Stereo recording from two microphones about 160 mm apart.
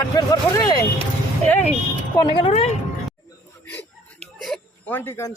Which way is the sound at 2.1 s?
35° left (ahead or behind).